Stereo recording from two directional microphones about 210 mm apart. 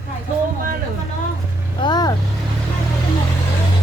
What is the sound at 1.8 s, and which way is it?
Speech, 20° left (ahead or behind).